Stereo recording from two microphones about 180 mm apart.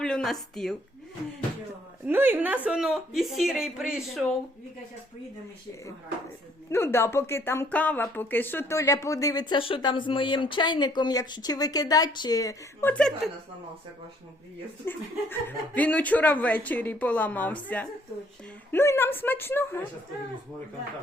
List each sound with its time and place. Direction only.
0.0 s a sound: 5° left (ahead or behind)
0.5 s speech: 5° left (ahead or behind)
2.0 s a woman's voice: 10° right (ahead or behind)
6.7 s a woman's voice: 15° left (ahead or behind)
12.9 s speech: 5° left (ahead or behind)
14.8 s speech: 10° left (ahead or behind)